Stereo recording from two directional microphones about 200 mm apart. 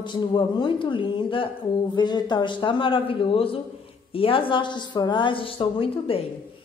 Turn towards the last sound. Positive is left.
turn(degrees=30)  # may be behind; listen again after turning